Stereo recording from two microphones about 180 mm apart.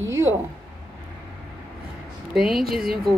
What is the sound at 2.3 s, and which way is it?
Speech, centre (ahead or behind).